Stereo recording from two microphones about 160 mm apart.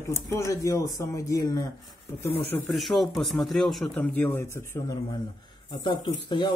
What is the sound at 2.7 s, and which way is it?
Speech, centre (ahead or behind).